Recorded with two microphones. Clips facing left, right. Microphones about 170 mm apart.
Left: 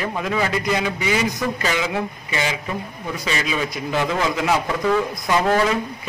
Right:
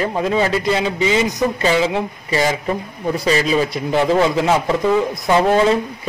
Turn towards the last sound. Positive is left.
turn(degrees=-25)  # may be behind; listen again after turning